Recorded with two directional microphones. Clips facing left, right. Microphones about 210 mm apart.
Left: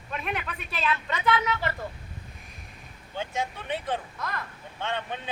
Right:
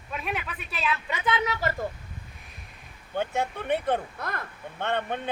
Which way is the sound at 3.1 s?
60° right (ahead or behind).